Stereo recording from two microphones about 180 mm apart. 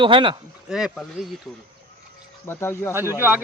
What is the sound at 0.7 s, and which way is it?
Speech, centre (ahead or behind).